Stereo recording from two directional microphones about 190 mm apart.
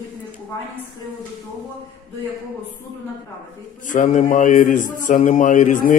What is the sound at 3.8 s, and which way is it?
A man's voice, 40° left (ahead or behind).